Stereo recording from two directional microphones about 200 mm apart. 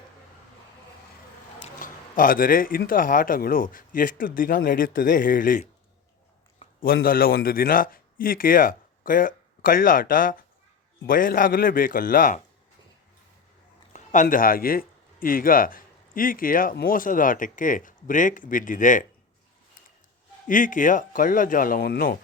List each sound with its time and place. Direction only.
1.6 s speech: 45° left (ahead or behind)
6.8 s speech: 45° left (ahead or behind)
13.9 s speech: 40° left (ahead or behind)
20.5 s speech: 40° left (ahead or behind)